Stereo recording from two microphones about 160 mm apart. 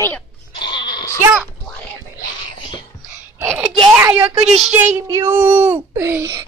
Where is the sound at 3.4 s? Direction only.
10° right (ahead or behind).